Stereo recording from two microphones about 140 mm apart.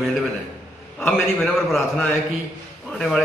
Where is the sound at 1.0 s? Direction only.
5° left (ahead or behind).